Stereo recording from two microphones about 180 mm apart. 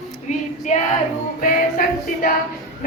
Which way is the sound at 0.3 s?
45° left (ahead or behind).